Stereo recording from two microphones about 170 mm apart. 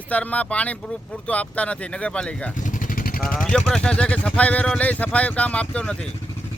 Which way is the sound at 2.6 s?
55° left (ahead or behind).